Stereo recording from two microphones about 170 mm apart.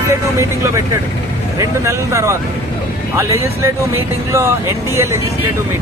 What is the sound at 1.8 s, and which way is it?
Speech, 15° right (ahead or behind).